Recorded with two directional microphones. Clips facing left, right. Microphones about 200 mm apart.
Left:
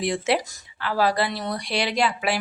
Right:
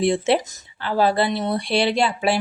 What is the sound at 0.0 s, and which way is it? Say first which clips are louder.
A woman's voice: right 5 dB; 25° right (ahead or behind).